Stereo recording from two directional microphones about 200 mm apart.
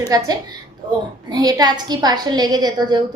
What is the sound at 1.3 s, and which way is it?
A woman's voice, 20° right (ahead or behind).